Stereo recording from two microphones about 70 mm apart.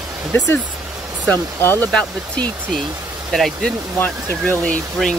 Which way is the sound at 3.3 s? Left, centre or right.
Centre.